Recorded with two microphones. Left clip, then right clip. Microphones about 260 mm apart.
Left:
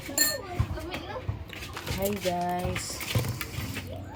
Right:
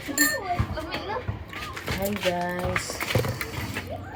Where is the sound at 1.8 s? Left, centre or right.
Centre.